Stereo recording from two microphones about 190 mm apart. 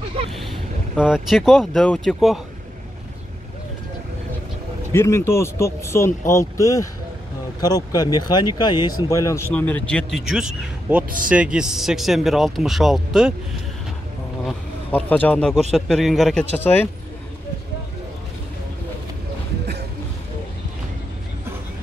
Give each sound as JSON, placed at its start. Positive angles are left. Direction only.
{"t": 0.4, "sound": "speech", "side_deg": 0}
{"t": 4.9, "sound": "speech", "side_deg": 15}
{"t": 14.4, "sound": "speech", "side_deg": 10}